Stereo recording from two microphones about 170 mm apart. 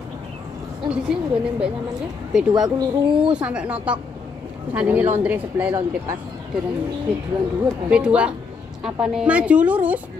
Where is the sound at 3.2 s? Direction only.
5° right (ahead or behind).